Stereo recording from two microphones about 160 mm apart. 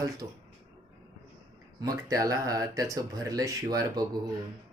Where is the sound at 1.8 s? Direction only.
20° right (ahead or behind).